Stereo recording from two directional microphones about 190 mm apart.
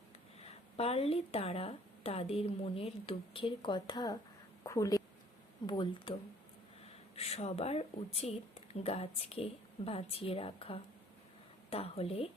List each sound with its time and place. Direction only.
0.3 s a woman's voice: 30° left (ahead or behind)